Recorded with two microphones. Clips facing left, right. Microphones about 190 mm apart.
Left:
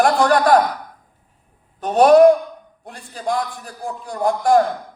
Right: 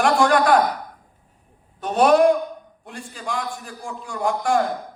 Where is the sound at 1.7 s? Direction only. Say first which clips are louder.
Left 5 dB; 40° left (ahead or behind).